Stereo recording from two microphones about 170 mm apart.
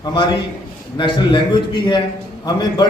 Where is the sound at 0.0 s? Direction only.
25° left (ahead or behind).